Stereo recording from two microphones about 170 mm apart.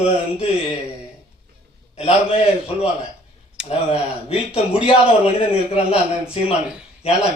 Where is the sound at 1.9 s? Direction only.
35° left (ahead or behind).